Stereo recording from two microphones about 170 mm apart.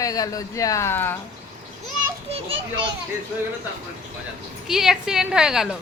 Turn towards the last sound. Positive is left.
turn(degrees=-5)  # may be behind; listen again after turning